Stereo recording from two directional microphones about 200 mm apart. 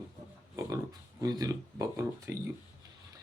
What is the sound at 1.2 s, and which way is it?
Speech, 15° right (ahead or behind).